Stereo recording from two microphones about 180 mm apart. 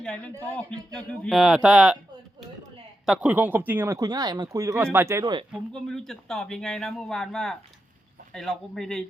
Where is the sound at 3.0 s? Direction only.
5° right (ahead or behind).